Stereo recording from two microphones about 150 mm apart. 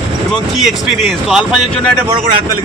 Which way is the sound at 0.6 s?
Centre (ahead or behind).